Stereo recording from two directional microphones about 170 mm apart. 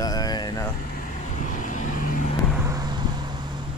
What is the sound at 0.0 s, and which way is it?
Vehicle, 20° left (ahead or behind).